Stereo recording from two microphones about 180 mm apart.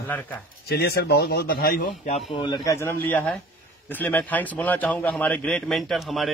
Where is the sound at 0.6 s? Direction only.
60° left (ahead or behind).